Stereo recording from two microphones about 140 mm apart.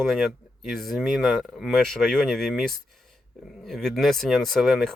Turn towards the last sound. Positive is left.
turn(degrees=0)  # may be behind; listen again after turning